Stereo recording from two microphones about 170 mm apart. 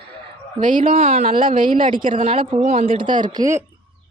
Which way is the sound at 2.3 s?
30° right (ahead or behind).